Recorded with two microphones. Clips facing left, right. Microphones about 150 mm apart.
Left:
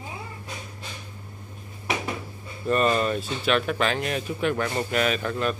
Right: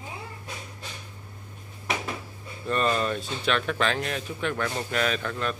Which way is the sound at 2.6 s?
5° left (ahead or behind).